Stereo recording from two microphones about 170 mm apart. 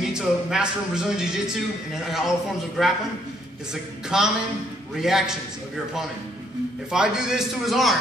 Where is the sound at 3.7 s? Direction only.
5° right (ahead or behind).